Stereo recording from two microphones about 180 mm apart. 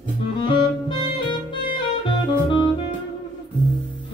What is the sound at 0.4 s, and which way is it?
Music, 25° left (ahead or behind).